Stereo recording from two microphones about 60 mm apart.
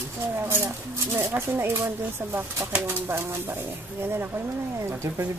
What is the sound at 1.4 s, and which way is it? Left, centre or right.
Speech, right.